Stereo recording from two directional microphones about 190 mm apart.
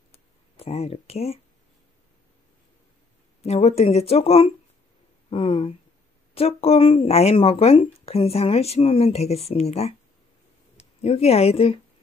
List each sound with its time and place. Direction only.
0.6 s speech: 35° left (ahead or behind)
3.4 s speech: 35° left (ahead or behind)